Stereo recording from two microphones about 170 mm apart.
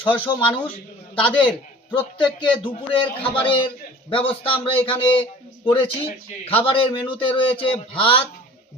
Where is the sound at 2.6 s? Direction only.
30° left (ahead or behind).